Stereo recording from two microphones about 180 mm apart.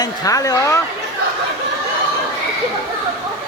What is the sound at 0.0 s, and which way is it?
Speech, 20° left (ahead or behind).